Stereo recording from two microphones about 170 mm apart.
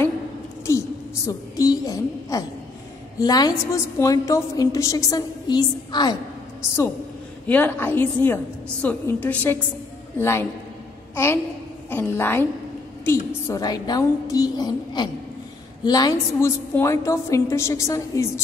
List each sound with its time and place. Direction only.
0.7 s a woman's voice: 20° left (ahead or behind)
7.4 s a woman's voice: 10° left (ahead or behind)
11.9 s a woman's voice: 15° left (ahead or behind)